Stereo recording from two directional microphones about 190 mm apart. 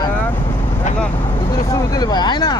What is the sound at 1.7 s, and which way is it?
Speech, 20° left (ahead or behind).